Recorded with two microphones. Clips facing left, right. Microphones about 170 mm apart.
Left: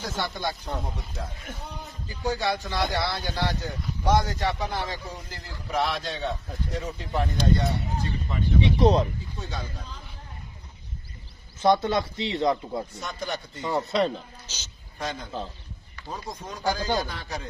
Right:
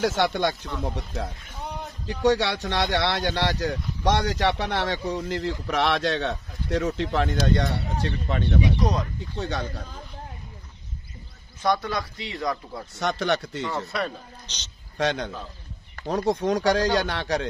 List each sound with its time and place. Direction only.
0.0 s speech: 80° right
8.5 s speech: 25° left (ahead or behind)
9.3 s speech: 70° right (ahead or behind)
11.6 s speech: 25° left (ahead or behind)
12.9 s speech: 80° right
13.7 s speech: 20° left (ahead or behind)
14.5 s a man's voice: 5° left (ahead or behind)
15.0 s speech: 80° right